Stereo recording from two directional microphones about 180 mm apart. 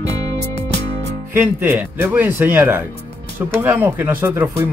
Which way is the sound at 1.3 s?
10° right (ahead or behind).